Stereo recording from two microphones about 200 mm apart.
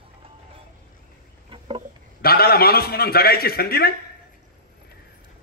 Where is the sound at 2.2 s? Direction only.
50° left (ahead or behind).